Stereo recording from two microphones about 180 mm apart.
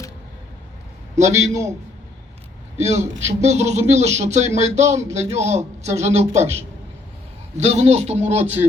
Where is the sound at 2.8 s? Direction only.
40° right (ahead or behind).